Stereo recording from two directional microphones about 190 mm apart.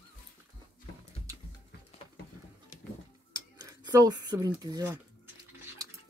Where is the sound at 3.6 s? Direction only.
20° right (ahead or behind).